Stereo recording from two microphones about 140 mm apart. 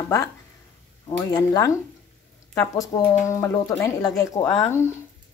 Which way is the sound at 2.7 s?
25° left (ahead or behind).